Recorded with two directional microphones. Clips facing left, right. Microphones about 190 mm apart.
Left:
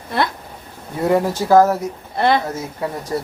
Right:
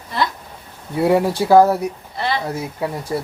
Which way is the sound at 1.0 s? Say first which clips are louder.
Right 1 dB; 15° right (ahead or behind).